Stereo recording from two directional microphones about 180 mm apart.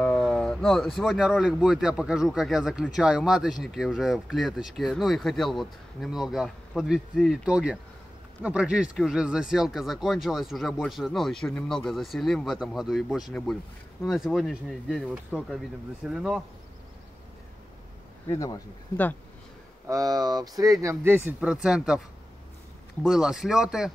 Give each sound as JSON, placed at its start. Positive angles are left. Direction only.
{"t": 0.0, "sound": "speech", "side_deg": 5}
{"t": 18.3, "sound": "speech", "side_deg": 15}
{"t": 19.9, "sound": "speech", "side_deg": -20}
{"t": 23.0, "sound": "speech", "side_deg": 0}